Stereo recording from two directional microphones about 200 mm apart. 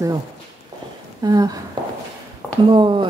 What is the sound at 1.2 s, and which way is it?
Speech, 20° right (ahead or behind).